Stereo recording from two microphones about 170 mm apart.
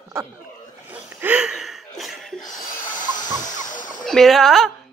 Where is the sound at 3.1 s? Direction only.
50° left (ahead or behind).